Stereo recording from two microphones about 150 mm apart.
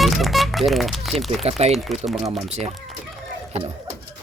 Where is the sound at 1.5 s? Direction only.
45° right (ahead or behind).